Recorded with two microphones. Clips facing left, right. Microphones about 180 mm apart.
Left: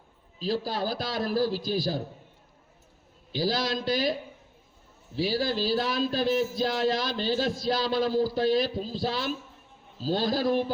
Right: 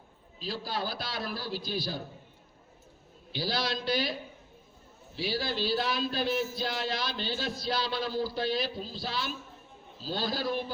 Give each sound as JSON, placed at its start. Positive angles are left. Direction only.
{"t": 0.3, "sound": "speech", "side_deg": 45}
{"t": 3.3, "sound": "speech", "side_deg": 45}